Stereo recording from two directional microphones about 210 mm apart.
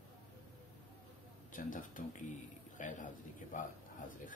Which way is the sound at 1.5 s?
40° left (ahead or behind).